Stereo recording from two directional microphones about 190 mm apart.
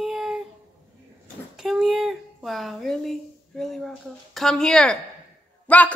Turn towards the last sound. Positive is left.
turn(degrees=10)  # may be behind; listen again after turning